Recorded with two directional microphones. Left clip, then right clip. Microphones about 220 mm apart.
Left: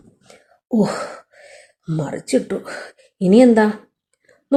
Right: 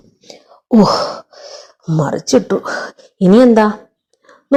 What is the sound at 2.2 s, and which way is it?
Speech, 20° right (ahead or behind).